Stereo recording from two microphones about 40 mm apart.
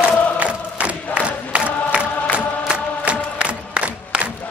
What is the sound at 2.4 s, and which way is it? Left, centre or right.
Music, right.